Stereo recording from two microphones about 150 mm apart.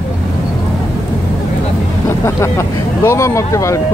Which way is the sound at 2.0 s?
15° left (ahead or behind).